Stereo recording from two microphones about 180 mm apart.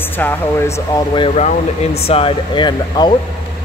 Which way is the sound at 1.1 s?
30° left (ahead or behind).